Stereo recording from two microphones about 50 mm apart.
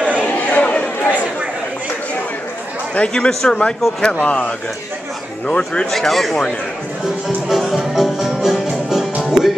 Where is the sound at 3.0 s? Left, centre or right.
Centre.